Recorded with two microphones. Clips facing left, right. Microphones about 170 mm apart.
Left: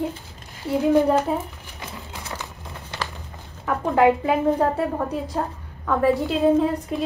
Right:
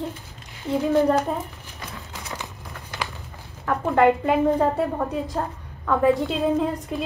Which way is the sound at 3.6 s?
Centre (ahead or behind).